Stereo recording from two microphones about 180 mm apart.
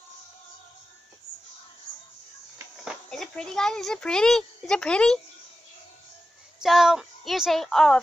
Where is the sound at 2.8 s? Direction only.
Centre (ahead or behind).